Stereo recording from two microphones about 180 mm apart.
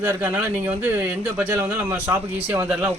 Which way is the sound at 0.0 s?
10° right (ahead or behind).